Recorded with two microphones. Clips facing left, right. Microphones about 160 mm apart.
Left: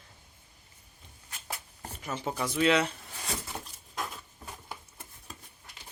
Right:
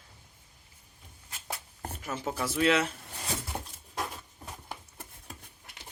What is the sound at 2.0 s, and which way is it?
Speech, 5° right (ahead or behind).